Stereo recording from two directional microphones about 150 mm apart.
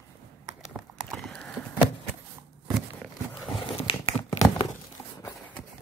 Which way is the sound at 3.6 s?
35° left (ahead or behind).